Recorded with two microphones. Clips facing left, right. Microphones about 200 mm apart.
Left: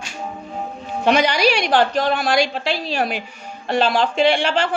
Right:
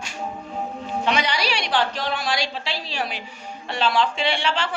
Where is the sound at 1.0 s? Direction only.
45° left (ahead or behind).